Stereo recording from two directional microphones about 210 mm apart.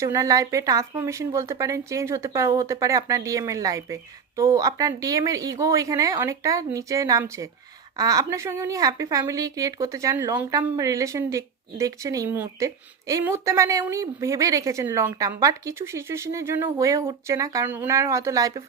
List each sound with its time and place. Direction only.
0.0 s a woman's voice: 15° right (ahead or behind)